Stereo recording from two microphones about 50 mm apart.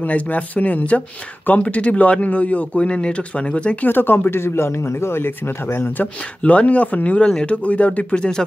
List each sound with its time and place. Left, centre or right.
0.0 s speech: left
3.8 s speech: left
6.4 s speech: left